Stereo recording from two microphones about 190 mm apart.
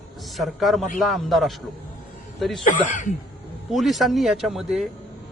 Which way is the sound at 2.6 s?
45° left (ahead or behind).